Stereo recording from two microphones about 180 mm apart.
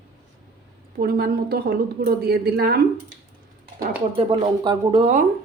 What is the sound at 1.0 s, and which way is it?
A woman's voice, 60° right (ahead or behind).